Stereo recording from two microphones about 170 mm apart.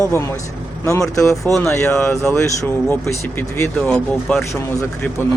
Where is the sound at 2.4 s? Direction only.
15° left (ahead or behind).